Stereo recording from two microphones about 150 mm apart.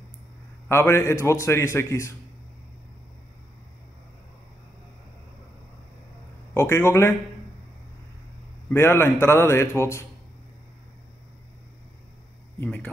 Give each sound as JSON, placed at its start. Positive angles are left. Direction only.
{"t": 0.7, "sound": "a man's voice", "side_deg": 15}
{"t": 6.5, "sound": "a man's voice", "side_deg": 15}
{"t": 8.6, "sound": "a man's voice", "side_deg": 15}
{"t": 12.6, "sound": "a man's voice", "side_deg": 10}